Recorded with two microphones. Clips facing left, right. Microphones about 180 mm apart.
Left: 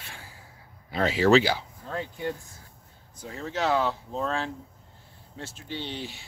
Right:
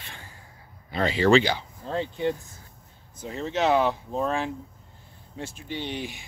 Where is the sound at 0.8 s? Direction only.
5° left (ahead or behind).